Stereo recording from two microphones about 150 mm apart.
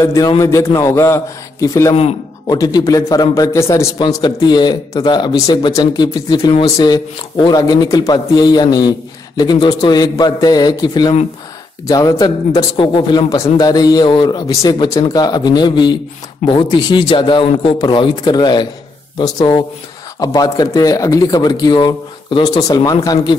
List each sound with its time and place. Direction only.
0.0 s a man's voice: 20° left (ahead or behind)